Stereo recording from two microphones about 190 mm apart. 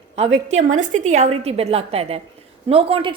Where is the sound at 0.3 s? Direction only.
90° right.